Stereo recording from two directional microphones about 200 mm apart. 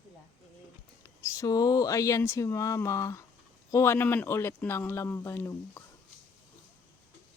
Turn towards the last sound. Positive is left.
turn(degrees=10)  # may be behind; listen again after turning